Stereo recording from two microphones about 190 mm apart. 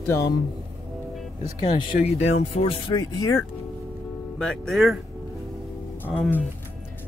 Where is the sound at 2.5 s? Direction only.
25° left (ahead or behind).